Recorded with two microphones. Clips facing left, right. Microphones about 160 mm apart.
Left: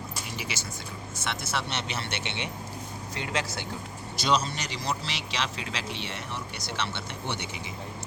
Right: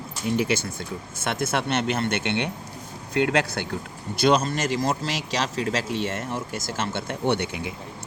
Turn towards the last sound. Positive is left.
turn(degrees=-60)  # may be behind; listen again after turning